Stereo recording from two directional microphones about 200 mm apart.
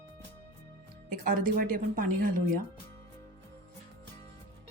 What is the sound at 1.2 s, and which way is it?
A woman's voice, 45° right (ahead or behind).